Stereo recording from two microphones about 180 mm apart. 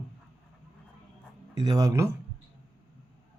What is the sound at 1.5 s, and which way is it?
Speech, 20° right (ahead or behind).